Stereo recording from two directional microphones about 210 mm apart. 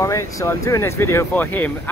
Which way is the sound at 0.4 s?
15° left (ahead or behind).